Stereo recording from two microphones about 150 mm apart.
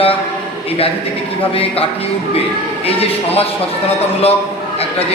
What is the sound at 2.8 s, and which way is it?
Speech, 40° left (ahead or behind).